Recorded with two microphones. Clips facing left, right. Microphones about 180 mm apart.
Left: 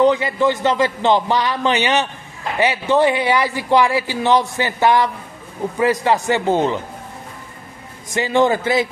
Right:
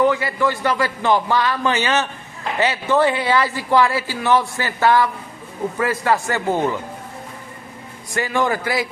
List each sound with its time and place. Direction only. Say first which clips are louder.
0.0 s a man's voice: left 3 dB; 20° left (ahead or behind)
8.1 s a man's voice: left 4 dB; 25° left (ahead or behind)